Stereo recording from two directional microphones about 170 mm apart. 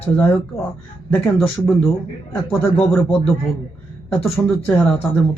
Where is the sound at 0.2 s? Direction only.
15° left (ahead or behind).